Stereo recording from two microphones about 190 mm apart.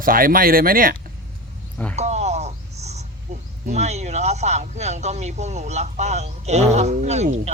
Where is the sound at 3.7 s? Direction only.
35° right (ahead or behind).